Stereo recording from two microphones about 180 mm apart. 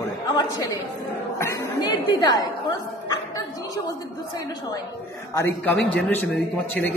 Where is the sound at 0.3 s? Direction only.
20° left (ahead or behind).